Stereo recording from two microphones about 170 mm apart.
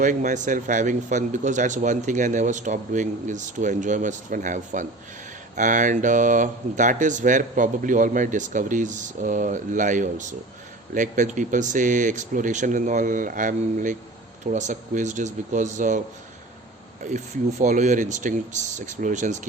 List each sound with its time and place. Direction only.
0.0 s speech: 50° right (ahead or behind)
17.0 s speech: 45° right (ahead or behind)